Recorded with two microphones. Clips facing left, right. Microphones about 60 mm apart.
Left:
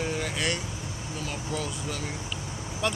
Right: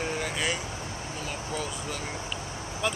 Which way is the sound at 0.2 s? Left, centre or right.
Centre.